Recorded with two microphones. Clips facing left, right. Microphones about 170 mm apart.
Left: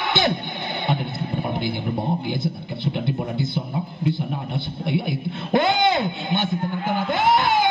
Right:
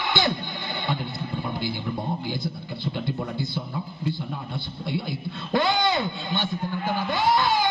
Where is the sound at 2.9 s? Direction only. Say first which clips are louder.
Left 3 dB; 20° left (ahead or behind).